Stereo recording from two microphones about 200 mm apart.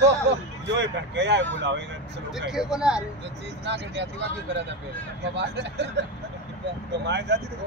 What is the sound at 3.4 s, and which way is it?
Speech, 60° right (ahead or behind).